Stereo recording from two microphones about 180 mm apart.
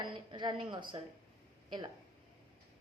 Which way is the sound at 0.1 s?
25° right (ahead or behind).